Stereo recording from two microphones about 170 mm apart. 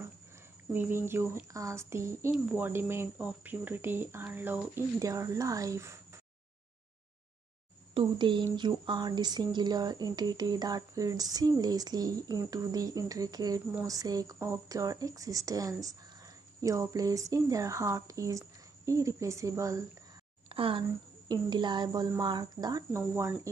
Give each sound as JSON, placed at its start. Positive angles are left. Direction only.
{"t": 0.7, "sound": "speech", "side_deg": -15}
{"t": 7.9, "sound": "speech", "side_deg": -30}
{"t": 20.4, "sound": "a woman's voice", "side_deg": -30}